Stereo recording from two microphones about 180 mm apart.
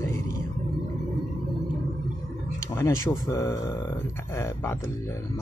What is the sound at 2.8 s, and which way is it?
Speech, 15° left (ahead or behind).